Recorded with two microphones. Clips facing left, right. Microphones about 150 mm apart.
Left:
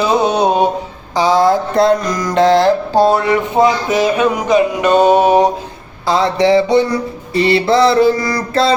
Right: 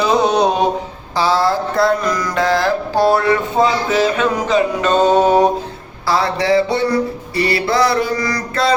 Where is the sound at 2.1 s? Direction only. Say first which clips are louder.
Left 5 dB; 20° left (ahead or behind).